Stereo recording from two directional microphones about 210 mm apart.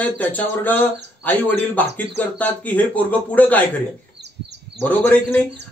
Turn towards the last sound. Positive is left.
turn(degrees=10)  # may be behind; listen again after turning